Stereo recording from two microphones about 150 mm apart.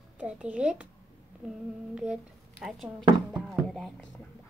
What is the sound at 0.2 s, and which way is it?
Speech, 10° right (ahead or behind).